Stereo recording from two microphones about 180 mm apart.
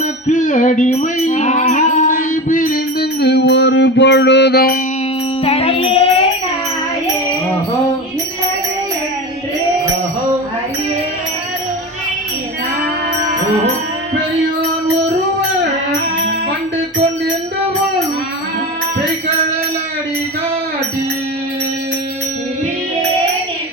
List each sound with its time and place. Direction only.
0.3 s music: 45° left (ahead or behind)
5.5 s music: 30° left (ahead or behind)